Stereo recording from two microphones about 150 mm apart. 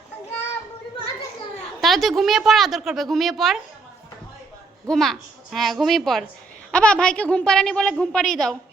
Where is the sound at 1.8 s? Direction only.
Centre (ahead or behind).